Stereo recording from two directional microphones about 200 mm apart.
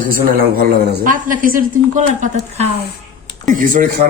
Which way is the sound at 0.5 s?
50° right (ahead or behind).